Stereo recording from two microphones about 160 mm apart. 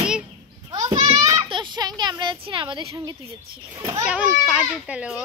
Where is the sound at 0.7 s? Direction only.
25° right (ahead or behind).